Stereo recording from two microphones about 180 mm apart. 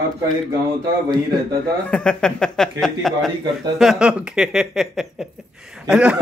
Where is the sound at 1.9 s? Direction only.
5° left (ahead or behind).